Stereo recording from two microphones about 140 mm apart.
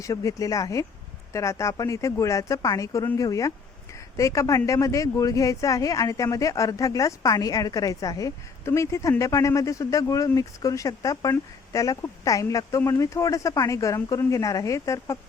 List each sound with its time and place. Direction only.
0.0 s speech: 25° left (ahead or behind)